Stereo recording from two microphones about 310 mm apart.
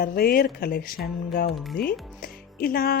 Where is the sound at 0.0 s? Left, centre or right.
Left.